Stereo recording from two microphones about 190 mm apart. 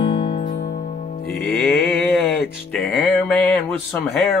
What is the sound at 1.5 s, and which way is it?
Music, centre (ahead or behind).